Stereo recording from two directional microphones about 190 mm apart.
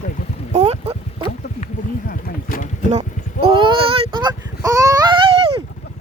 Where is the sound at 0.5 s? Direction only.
35° right (ahead or behind).